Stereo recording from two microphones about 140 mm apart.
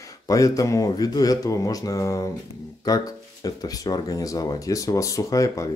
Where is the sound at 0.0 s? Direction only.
25° left (ahead or behind).